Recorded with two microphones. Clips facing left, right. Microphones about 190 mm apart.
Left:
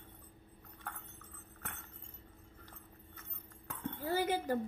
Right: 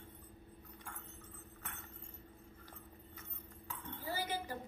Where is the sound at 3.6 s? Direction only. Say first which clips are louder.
Left 6 dB; 55° left (ahead or behind).